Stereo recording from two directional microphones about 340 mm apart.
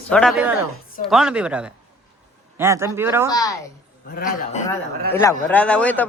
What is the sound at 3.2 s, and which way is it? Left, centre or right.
Speech, centre.